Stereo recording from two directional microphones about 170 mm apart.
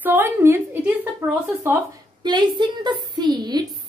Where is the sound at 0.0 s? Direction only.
10° right (ahead or behind).